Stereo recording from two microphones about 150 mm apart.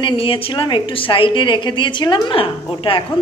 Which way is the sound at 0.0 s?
35° left (ahead or behind).